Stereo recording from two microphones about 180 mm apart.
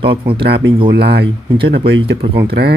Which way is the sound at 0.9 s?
65° right (ahead or behind).